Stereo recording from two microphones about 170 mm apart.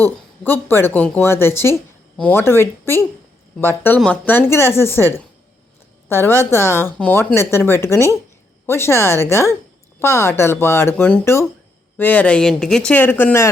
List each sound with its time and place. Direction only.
0.0 s a woman's voice: 10° left (ahead or behind)